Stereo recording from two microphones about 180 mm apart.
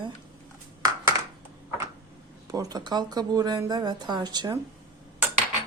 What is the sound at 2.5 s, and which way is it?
Speech, 20° right (ahead or behind).